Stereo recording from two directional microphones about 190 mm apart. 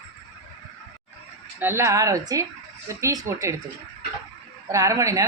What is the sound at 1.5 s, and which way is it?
Speech, 10° right (ahead or behind).